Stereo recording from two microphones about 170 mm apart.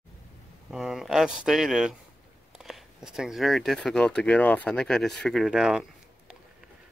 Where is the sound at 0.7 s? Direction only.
Centre (ahead or behind).